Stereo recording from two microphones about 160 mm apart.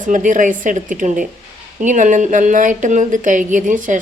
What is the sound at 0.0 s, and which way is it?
A woman's voice, 50° right (ahead or behind).